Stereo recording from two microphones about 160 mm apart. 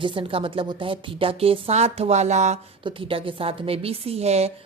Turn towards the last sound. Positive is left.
turn(degrees=-40)  # may be behind; listen again after turning